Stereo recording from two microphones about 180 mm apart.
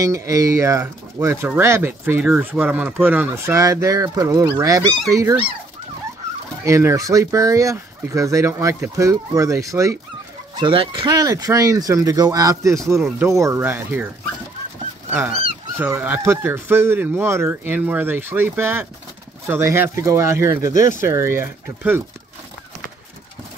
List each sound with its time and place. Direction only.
0.0 s speech: 20° right (ahead or behind)
6.6 s speech: 15° right (ahead or behind)
10.6 s speech: 30° right (ahead or behind); by 14.0 s 10° right (ahead or behind)
15.0 s dog: 10° right (ahead or behind)
15.8 s speech: 10° right (ahead or behind)
20.7 s speech: 45° left (ahead or behind)
21.0 s speech: 15° right (ahead or behind)